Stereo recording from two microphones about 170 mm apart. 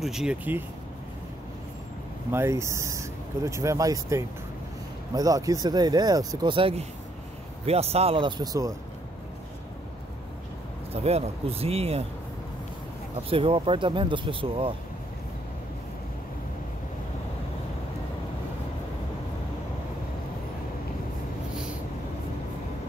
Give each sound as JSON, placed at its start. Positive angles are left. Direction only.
{"t": 0.0, "sound": "speech", "side_deg": -5}
{"t": 2.3, "sound": "speech", "side_deg": -15}
{"t": 10.9, "sound": "speech", "side_deg": -40}
{"t": 13.3, "sound": "speech", "side_deg": -30}